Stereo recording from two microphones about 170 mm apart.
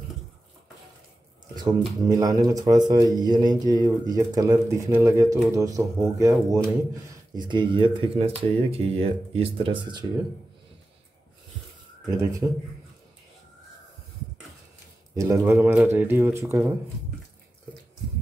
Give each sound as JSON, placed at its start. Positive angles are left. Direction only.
{"t": 1.5, "sound": "speech", "side_deg": -25}
{"t": 12.1, "sound": "speech", "side_deg": -20}
{"t": 15.1, "sound": "speech", "side_deg": -20}